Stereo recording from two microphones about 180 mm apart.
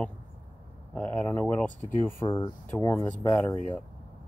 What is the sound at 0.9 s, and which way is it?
Speech, 10° left (ahead or behind).